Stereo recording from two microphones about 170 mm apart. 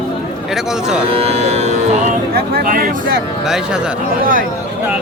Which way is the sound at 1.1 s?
35° right (ahead or behind).